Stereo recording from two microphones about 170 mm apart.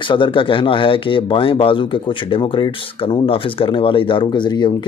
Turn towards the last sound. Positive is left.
turn(degrees=25)  # may be behind; listen again after turning